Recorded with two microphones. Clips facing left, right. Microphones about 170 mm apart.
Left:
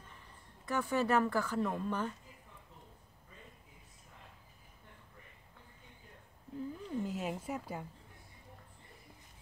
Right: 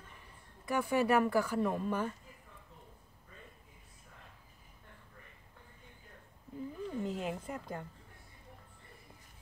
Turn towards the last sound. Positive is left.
turn(degrees=5)  # may be behind; listen again after turning